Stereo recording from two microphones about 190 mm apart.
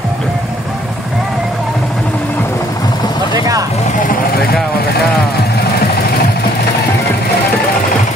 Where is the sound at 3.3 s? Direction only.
20° right (ahead or behind).